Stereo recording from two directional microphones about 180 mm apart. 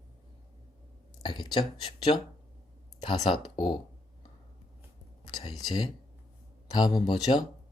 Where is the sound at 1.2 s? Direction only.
25° left (ahead or behind).